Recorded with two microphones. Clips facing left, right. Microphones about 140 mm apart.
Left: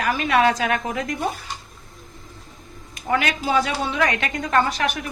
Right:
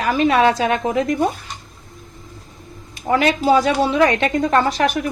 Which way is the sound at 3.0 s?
30° right (ahead or behind).